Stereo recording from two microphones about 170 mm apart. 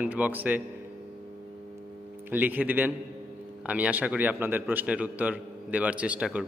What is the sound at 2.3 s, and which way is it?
A man's voice, 10° right (ahead or behind).